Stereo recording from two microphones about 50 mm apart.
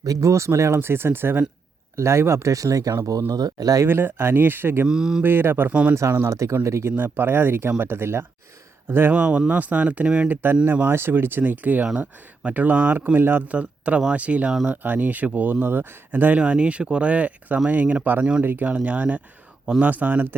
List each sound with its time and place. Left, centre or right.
0.2 s speech: right
0.8 s speech: right
2.0 s speech: right
3.8 s speech: right
4.9 s speech: centre
5.2 s speech: right
6.1 s speech: right
6.9 s speech: right
9.1 s speech: right
10.2 s speech: right
13.5 s speech: right
16.4 s speech: right